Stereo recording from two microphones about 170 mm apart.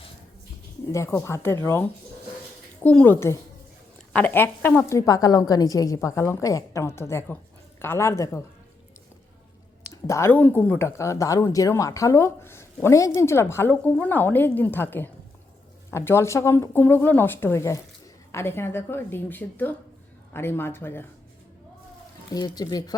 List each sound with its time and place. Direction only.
0.9 s a woman's voice: 15° left (ahead or behind)
9.9 s a woman's voice: 15° left (ahead or behind)
22.4 s speech: 25° left (ahead or behind)